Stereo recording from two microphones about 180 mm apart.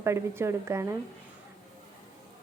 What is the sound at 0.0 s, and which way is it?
Speech, 15° right (ahead or behind).